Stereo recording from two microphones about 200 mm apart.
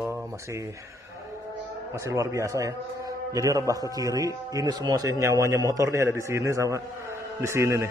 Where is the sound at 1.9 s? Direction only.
15° right (ahead or behind).